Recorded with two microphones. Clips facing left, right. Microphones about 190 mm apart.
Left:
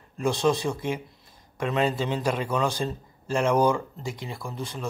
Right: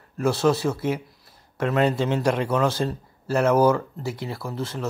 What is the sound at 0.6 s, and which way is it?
Speech, 15° left (ahead or behind).